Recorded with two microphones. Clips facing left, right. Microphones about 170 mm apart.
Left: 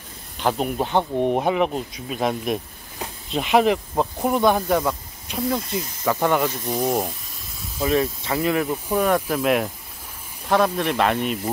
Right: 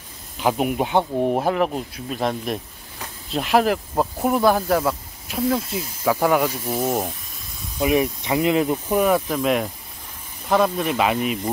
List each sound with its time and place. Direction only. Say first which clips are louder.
0.4 s speech: right 2 dB; 5° right (ahead or behind)
7.8 s speech: right 2 dB; 15° right (ahead or behind)
9.3 s speech: even; centre (ahead or behind)